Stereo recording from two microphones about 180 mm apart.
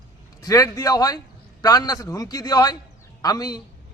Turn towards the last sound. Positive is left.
turn(degrees=20)  # may be behind; listen again after turning